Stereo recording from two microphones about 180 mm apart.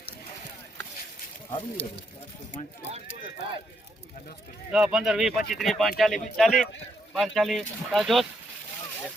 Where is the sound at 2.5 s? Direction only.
45° left (ahead or behind).